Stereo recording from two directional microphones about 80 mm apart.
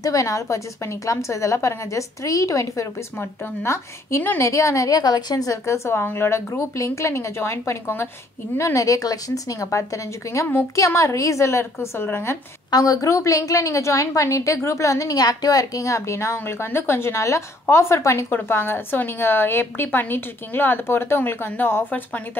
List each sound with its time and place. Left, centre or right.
0.0 s a woman's voice: left
12.7 s a woman's voice: left